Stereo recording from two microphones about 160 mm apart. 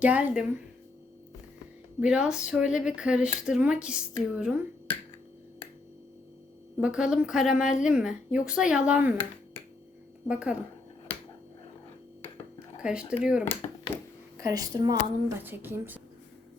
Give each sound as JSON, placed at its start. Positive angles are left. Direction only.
{"t": 0.0, "sound": "a woman's voice", "side_deg": -10}
{"t": 2.0, "sound": "speech", "side_deg": -5}
{"t": 6.7, "sound": "speech", "side_deg": -5}
{"t": 10.2, "sound": "a woman's voice", "side_deg": -5}
{"t": 12.8, "sound": "speech", "side_deg": -5}
{"t": 13.9, "sound": "speech", "side_deg": 10}
{"t": 14.3, "sound": "a woman's voice", "side_deg": -20}
{"t": 15.4, "sound": "a woman's voice", "side_deg": -10}